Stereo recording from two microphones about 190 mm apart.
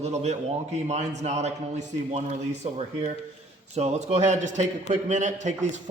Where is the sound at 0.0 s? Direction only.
35° right (ahead or behind).